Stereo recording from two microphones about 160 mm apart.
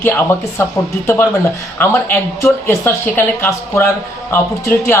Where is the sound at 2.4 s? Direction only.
15° left (ahead or behind).